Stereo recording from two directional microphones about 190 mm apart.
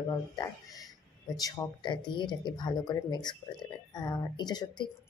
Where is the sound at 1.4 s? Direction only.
25° left (ahead or behind).